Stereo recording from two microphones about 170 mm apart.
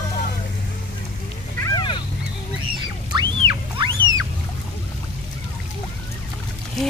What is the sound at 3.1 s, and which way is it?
Rodents, 25° right (ahead or behind).